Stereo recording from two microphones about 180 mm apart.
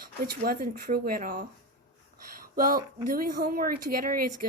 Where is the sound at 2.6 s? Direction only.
55° right (ahead or behind).